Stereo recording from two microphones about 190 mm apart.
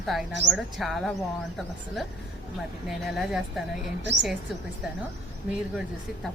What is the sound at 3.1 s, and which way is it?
Speech, centre (ahead or behind).